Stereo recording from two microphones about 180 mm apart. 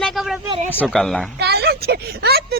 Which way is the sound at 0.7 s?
10° left (ahead or behind).